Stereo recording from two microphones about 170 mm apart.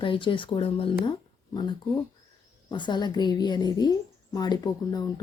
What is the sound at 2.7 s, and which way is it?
A woman's voice, 25° left (ahead or behind).